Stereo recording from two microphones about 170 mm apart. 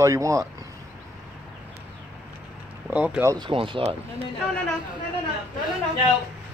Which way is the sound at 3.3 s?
30° right (ahead or behind).